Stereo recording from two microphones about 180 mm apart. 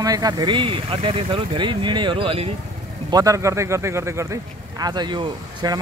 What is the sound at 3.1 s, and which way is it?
Speech, 20° right (ahead or behind).